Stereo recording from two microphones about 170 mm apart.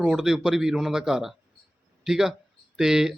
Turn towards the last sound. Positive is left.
turn(degrees=-5)  # may be behind; listen again after turning